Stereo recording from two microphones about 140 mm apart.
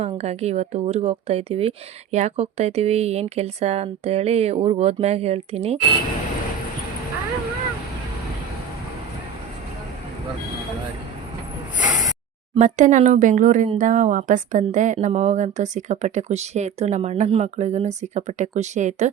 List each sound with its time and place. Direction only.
0.0 s speech: 45° right (ahead or behind)
11.9 s a sound: 25° right (ahead or behind)
12.5 s speech: 60° right (ahead or behind)